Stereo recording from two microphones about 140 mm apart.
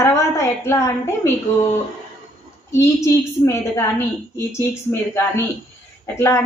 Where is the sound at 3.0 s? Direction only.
20° left (ahead or behind).